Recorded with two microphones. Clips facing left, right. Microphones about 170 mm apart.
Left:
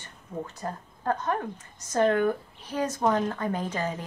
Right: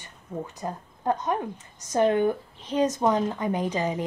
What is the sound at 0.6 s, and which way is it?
A woman's voice, 15° right (ahead or behind).